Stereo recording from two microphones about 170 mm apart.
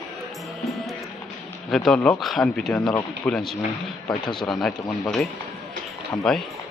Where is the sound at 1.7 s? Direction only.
5° left (ahead or behind).